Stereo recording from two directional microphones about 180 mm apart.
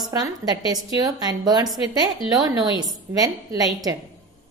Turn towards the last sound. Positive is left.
turn(degrees=-20)  # may be behind; listen again after turning